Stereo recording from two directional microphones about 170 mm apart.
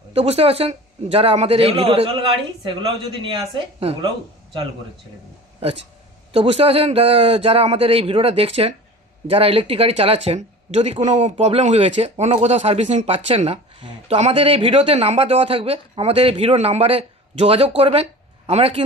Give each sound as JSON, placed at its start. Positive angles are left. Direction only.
{"t": 0.1, "sound": "speech", "side_deg": -35}
{"t": 6.3, "sound": "speech", "side_deg": -35}